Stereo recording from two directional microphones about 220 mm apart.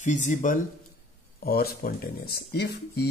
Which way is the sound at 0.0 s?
35° left (ahead or behind).